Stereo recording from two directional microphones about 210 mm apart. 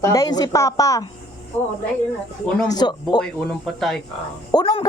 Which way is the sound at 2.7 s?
20° left (ahead or behind).